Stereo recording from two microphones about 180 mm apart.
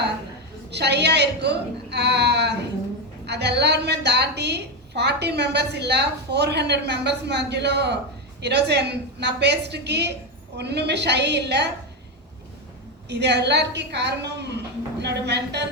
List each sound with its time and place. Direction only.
0.7 s a woman's voice: 70° right (ahead or behind)
13.1 s a woman's voice: 70° right (ahead or behind)